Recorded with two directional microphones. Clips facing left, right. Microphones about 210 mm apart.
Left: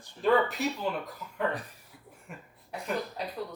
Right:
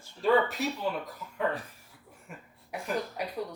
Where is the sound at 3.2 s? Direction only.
10° right (ahead or behind).